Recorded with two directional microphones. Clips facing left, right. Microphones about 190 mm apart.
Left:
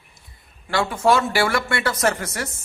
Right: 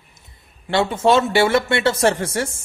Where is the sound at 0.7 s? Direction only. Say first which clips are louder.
Right 2 dB; 25° right (ahead or behind).